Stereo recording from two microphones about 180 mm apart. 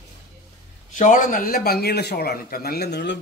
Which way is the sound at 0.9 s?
45° left (ahead or behind).